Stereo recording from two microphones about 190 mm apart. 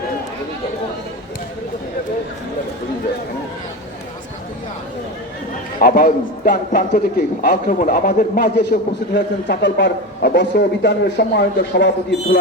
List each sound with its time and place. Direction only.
5.8 s a man's voice: 50° left (ahead or behind)